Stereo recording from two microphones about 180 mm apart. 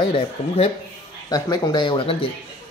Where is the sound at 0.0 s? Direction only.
30° left (ahead or behind).